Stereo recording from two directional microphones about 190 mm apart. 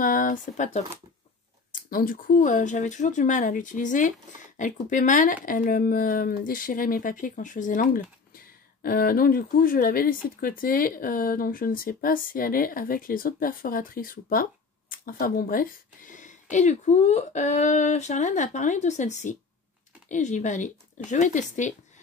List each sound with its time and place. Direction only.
0.0 s speech: 45° left (ahead or behind)